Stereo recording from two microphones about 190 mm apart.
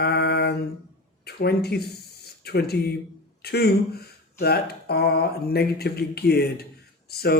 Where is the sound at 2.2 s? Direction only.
55° left (ahead or behind).